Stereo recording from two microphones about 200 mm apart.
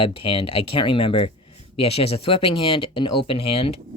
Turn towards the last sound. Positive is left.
turn(degrees=30)  # may be behind; listen again after turning